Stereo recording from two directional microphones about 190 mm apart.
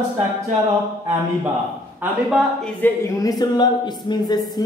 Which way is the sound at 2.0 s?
Centre (ahead or behind).